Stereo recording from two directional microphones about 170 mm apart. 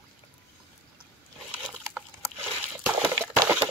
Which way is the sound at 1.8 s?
15° right (ahead or behind).